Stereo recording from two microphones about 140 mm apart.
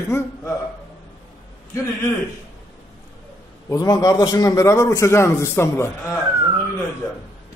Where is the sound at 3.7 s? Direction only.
25° left (ahead or behind).